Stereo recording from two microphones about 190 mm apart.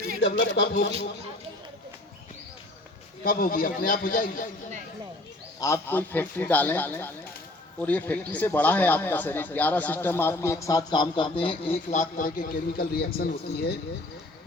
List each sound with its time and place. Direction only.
0.2 s speech: 65° left (ahead or behind)
3.2 s a man's voice: 50° left (ahead or behind)
5.5 s speech: 15° left (ahead or behind); by 13.2 s 55° left (ahead or behind)